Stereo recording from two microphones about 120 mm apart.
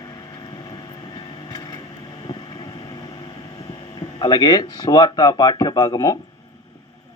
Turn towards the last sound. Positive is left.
turn(degrees=30)  # may be behind; listen again after turning